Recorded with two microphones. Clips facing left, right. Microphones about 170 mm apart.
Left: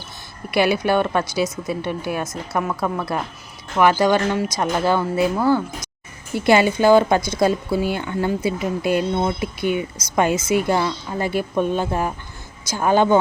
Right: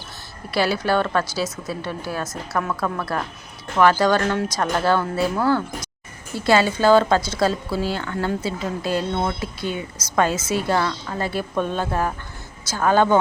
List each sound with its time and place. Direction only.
0.5 s speech: 15° left (ahead or behind)